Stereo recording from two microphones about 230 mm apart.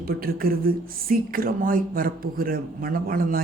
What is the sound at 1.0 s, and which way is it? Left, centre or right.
Speech, right.